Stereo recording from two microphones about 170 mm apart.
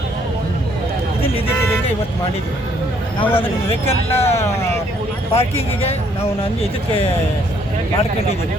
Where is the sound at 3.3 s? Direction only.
35° left (ahead or behind).